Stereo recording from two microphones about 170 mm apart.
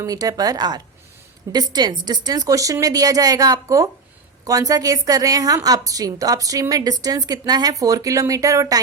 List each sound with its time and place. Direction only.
0.0 s a woman's voice: 20° right (ahead or behind)